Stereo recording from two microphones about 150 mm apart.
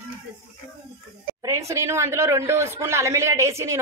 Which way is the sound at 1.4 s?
20° right (ahead or behind).